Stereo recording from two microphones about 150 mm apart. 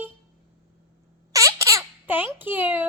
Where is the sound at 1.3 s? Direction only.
20° right (ahead or behind).